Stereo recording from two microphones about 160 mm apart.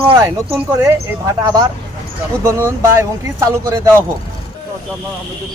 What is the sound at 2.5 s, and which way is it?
Speech, 15° right (ahead or behind).